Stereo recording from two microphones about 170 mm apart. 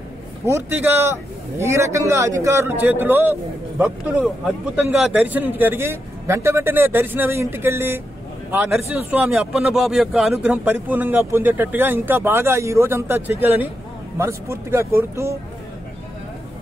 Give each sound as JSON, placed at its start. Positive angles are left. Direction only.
{"t": 0.5, "sound": "a man's voice", "side_deg": -15}